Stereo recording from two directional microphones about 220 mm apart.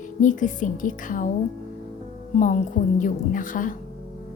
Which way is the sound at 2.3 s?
35° left (ahead or behind).